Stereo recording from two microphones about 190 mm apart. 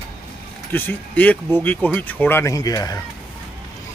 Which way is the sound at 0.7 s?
10° left (ahead or behind).